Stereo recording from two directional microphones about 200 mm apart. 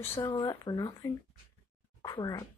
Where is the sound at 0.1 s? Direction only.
25° left (ahead or behind).